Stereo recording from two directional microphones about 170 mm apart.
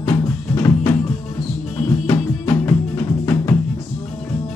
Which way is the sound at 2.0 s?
20° left (ahead or behind).